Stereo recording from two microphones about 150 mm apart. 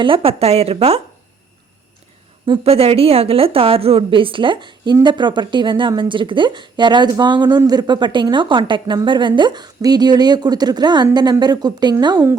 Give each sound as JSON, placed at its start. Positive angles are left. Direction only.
{"t": 0.0, "sound": "a woman's voice", "side_deg": -35}
{"t": 2.5, "sound": "a woman's voice", "side_deg": -40}